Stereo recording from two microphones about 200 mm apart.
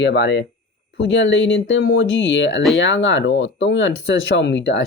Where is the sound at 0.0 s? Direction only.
60° left (ahead or behind).